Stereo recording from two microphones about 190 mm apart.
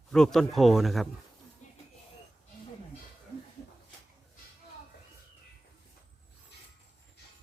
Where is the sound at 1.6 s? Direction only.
40° left (ahead or behind).